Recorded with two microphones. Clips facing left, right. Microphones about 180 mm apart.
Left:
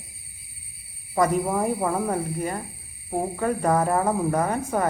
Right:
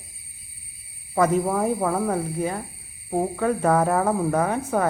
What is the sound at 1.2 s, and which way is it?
Speech, 5° left (ahead or behind).